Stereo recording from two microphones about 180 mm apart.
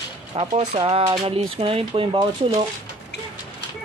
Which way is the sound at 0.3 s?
30° right (ahead or behind).